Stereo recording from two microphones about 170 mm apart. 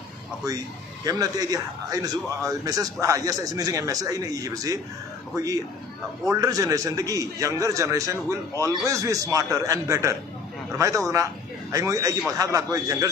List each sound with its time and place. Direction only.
1.0 s a man's voice: 20° right (ahead or behind)
11.7 s a man's voice: 20° right (ahead or behind)